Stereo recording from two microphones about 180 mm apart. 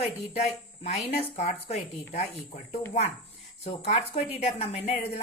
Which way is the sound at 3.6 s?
35° left (ahead or behind).